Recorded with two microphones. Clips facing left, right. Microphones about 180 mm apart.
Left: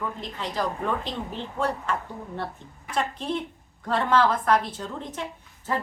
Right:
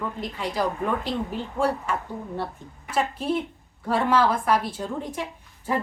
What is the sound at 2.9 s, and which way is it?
A woman's voice, 5° right (ahead or behind).